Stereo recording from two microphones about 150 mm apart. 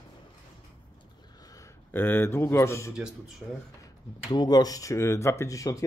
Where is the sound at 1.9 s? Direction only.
15° left (ahead or behind).